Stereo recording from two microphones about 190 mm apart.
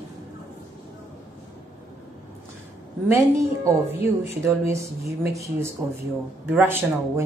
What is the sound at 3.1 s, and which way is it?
A woman's voice, 15° right (ahead or behind).